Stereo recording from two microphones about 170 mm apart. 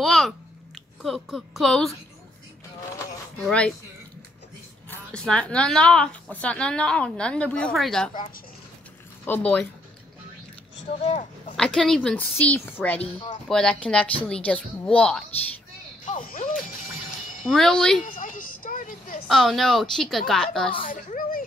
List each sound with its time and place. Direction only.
0.0 s a child's voice: centre (ahead or behind)
3.4 s a woman's voice: 5° left (ahead or behind)
4.8 s a woman's voice: 5° left (ahead or behind)
9.2 s a woman's voice: 10° left (ahead or behind)
11.5 s a woman's voice: 5° left (ahead or behind)
16.1 s speech: 50° left (ahead or behind)
17.5 s a woman's voice: centre (ahead or behind)
18.0 s a sound: 55° left (ahead or behind)
19.2 s a woman's voice: centre (ahead or behind)
20.8 s a child's voice: 50° left (ahead or behind)